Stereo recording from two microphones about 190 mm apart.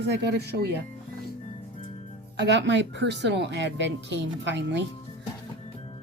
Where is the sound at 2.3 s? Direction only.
65° right (ahead or behind).